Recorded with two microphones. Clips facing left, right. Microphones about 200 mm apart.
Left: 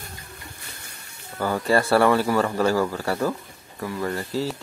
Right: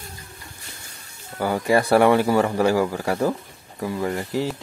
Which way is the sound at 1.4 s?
10° right (ahead or behind).